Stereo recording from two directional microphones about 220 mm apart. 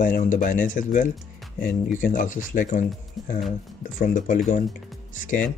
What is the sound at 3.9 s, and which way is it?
Speech, 35° left (ahead or behind).